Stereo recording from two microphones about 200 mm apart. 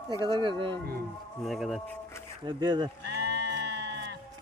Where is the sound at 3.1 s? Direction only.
55° right (ahead or behind).